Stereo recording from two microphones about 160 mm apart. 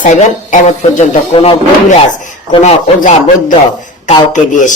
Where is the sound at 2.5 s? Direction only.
35° left (ahead or behind).